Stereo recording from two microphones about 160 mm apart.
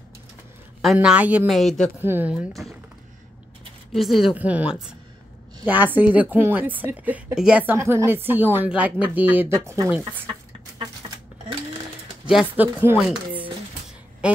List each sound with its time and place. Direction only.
0.8 s a woman's voice: 5° right (ahead or behind)
1.5 s a woman's voice: centre (ahead or behind)
2.0 s a woman's voice: 10° right (ahead or behind)
3.9 s a woman's voice: centre (ahead or behind); by 9.8 s 15° right (ahead or behind)
10.8 s a sound: 35° right (ahead or behind)
12.3 s a woman's voice: 5° right (ahead or behind)
14.2 s a sound: 5° right (ahead or behind)